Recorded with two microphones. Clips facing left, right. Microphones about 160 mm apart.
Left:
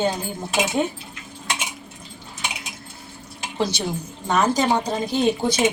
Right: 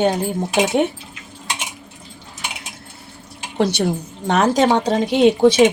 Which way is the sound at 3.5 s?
65° right (ahead or behind).